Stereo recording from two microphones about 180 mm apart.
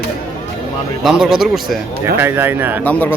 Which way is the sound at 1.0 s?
Centre (ahead or behind).